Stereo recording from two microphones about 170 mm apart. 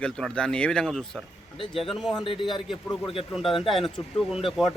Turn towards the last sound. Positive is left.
turn(degrees=0)  # may be behind; listen again after turning